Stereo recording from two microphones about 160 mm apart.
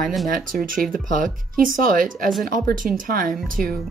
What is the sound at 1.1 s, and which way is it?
Speech, 55° right (ahead or behind).